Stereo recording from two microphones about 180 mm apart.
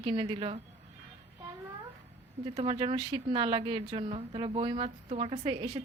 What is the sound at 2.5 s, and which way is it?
Speech, 30° right (ahead or behind).